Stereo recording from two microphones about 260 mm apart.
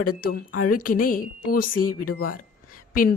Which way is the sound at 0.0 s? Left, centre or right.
Left.